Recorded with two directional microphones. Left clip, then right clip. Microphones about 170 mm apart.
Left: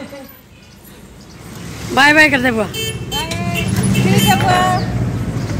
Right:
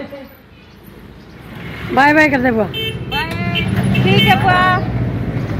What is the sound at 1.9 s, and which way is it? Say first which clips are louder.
Speech: left 1 dB; centre (ahead or behind).